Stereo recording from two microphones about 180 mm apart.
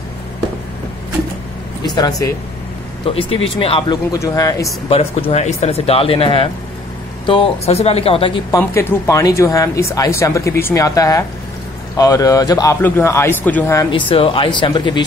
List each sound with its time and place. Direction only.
1.8 s speech: 20° left (ahead or behind)
3.5 s speech: 30° left (ahead or behind)
4.8 s speech: 30° left (ahead or behind)
8.5 s speech: 15° left (ahead or behind)
13.7 s speech: 25° left (ahead or behind)